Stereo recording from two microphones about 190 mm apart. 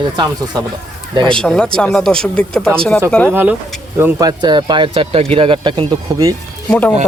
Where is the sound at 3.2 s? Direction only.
10° right (ahead or behind).